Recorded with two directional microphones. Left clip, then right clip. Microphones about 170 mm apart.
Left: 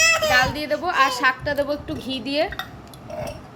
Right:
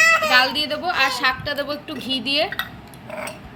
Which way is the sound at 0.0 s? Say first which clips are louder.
Right 3 dB; 30° left (ahead or behind).